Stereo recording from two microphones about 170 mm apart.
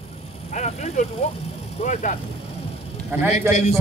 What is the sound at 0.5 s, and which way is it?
A man's voice, 40° left (ahead or behind).